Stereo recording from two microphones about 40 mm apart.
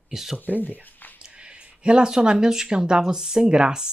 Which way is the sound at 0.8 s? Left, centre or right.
Left.